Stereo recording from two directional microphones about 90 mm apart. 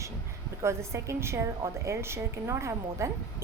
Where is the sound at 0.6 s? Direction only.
30° right (ahead or behind).